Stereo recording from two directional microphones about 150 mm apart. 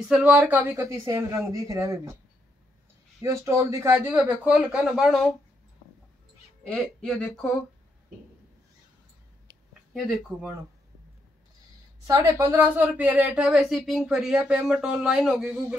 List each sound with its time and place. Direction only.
0.1 s a woman's voice: 10° right (ahead or behind)
3.2 s speech: 20° right (ahead or behind); by 5.3 s centre (ahead or behind)
6.6 s speech: 5° left (ahead or behind)
12.1 s speech: 20° right (ahead or behind)